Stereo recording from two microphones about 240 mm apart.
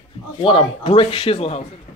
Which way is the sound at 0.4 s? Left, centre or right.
Left.